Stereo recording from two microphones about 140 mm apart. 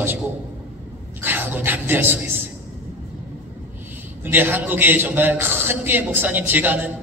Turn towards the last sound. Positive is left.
turn(degrees=-10)  # may be behind; listen again after turning